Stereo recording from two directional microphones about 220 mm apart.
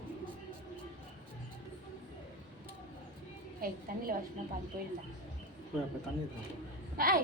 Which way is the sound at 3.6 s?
40° right (ahead or behind).